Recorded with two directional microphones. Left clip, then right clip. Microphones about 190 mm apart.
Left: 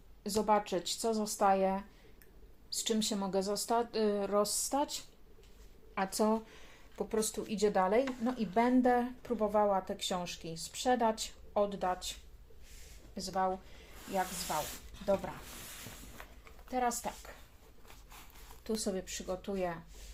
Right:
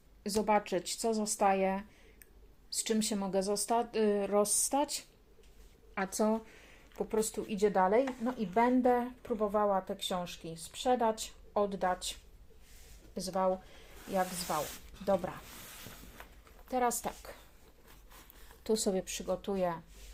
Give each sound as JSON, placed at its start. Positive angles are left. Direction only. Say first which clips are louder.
{"t": 0.2, "sound": "speech", "louder": "even", "side_deg": -20}
{"t": 13.1, "sound": "speech", "louder": "right 1 dB", "side_deg": -55}
{"t": 15.0, "sound": "speech", "louder": "right 1 dB", "side_deg": -60}
{"t": 16.6, "sound": "speech", "louder": "right 2 dB", "side_deg": -55}
{"t": 18.6, "sound": "speech", "louder": "right 5 dB", "side_deg": -35}